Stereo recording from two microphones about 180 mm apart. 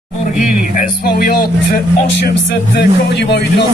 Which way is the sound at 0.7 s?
50° left (ahead or behind).